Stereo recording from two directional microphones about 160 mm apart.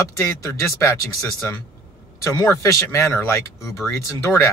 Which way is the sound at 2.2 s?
15° left (ahead or behind).